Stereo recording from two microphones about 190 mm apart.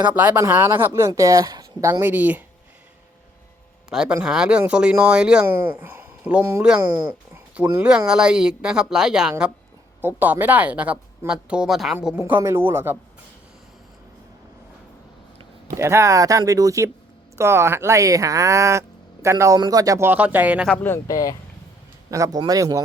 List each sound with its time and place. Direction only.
0.0 s speech: 10° right (ahead or behind)
3.8 s speech: 5° right (ahead or behind)
15.6 s speech: 15° right (ahead or behind)
20.8 s speech: 15° left (ahead or behind)
22.1 s speech: 20° right (ahead or behind)